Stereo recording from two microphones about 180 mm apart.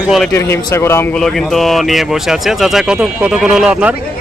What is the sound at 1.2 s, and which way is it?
Speech, centre (ahead or behind).